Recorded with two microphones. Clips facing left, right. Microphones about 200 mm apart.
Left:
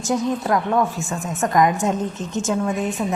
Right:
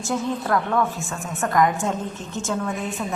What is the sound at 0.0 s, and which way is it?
A woman's voice, 15° left (ahead or behind).